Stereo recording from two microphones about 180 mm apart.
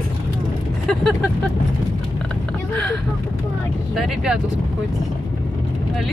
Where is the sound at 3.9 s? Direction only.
5° right (ahead or behind).